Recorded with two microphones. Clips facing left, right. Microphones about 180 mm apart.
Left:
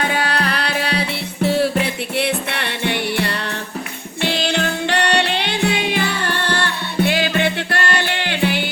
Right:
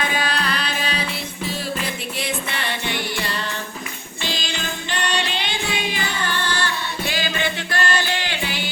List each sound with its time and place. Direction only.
0.0 s music: 65° left (ahead or behind)